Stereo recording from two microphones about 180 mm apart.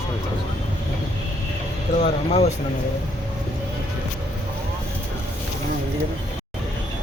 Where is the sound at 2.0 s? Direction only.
35° left (ahead or behind).